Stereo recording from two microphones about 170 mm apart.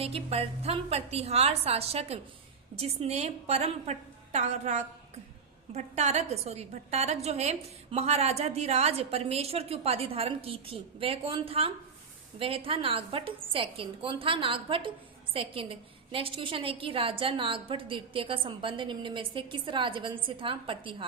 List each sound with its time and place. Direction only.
0.0 s a woman's voice: 35° right (ahead or behind)